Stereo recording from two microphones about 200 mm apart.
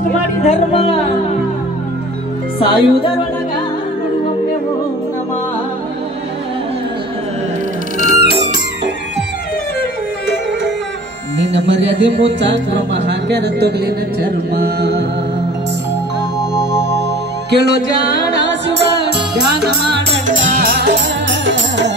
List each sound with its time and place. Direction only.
0.4 s speech: 30° left (ahead or behind)
2.6 s music: 25° left (ahead or behind)
8.0 s music: 45° right (ahead or behind)
11.3 s speech: 65° right (ahead or behind)
17.5 s music: 60° right (ahead or behind)